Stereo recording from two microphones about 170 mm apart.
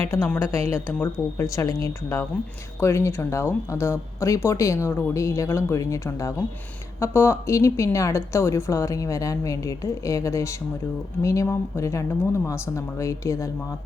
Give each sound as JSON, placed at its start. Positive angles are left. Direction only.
{"t": 0.1, "sound": "a woman's voice", "side_deg": 15}